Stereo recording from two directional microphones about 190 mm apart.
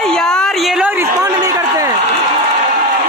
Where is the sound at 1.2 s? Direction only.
15° right (ahead or behind).